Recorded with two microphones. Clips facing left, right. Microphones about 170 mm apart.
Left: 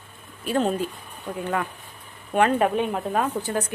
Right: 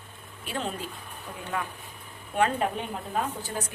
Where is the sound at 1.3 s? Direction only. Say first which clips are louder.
Left 11 dB; 55° left (ahead or behind).